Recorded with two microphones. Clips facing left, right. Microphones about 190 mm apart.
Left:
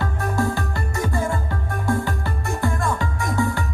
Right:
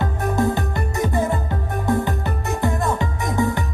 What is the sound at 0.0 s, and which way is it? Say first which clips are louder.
Music: right 3 dB; 20° right (ahead or behind).